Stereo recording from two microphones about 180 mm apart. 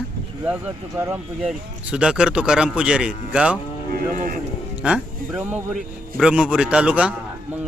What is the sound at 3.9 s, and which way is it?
Speech, 50° right (ahead or behind).